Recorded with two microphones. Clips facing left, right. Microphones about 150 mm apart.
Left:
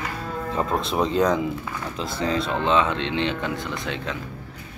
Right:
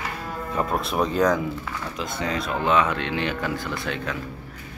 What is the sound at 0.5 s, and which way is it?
Speech, 25° left (ahead or behind).